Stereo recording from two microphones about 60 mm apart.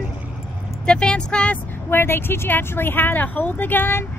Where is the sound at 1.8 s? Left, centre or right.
Left.